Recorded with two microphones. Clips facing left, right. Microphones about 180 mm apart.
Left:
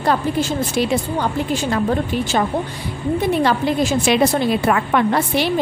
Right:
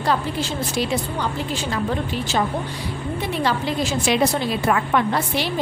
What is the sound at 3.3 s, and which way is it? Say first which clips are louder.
A woman's voice: left 3 dB; 50° left (ahead or behind).